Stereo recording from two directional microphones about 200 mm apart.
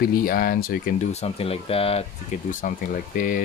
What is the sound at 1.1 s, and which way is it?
Speech, 30° left (ahead or behind).